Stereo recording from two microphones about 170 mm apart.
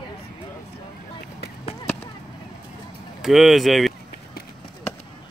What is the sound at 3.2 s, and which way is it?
Speech, centre (ahead or behind).